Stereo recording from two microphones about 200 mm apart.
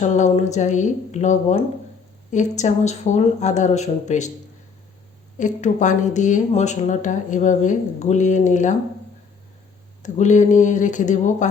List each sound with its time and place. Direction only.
0.0 s speech: 35° left (ahead or behind)
5.4 s speech: 35° left (ahead or behind)
10.0 s speech: 35° left (ahead or behind)